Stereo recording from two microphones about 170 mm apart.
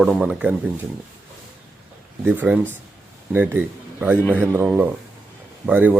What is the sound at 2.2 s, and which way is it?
Speech, 10° right (ahead or behind).